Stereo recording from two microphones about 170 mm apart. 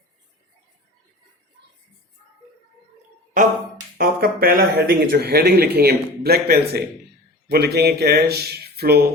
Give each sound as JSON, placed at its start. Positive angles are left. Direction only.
{"t": 3.9, "sound": "speech", "side_deg": -55}